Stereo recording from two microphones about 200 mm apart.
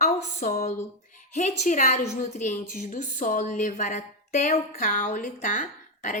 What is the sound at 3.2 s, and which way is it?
A woman's voice, 40° left (ahead or behind).